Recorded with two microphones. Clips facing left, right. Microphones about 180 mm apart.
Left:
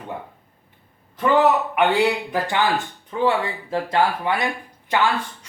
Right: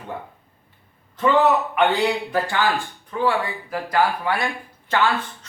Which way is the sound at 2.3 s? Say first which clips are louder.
Even; 20° left (ahead or behind).